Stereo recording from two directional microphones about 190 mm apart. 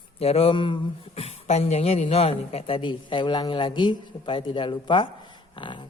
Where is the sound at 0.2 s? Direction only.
30° left (ahead or behind).